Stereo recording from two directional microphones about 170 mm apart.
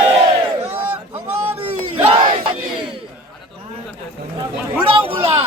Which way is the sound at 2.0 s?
35° right (ahead or behind).